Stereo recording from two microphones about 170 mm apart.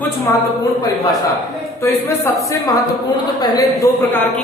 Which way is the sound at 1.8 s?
15° left (ahead or behind).